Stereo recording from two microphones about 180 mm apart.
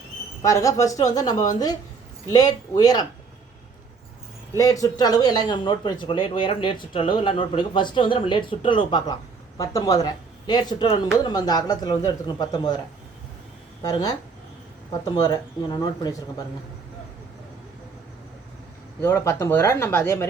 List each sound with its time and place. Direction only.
0.4 s speech: 15° left (ahead or behind)
4.5 s speech: 20° left (ahead or behind)
13.8 s speech: 20° left (ahead or behind)
19.0 s speech: 15° left (ahead or behind)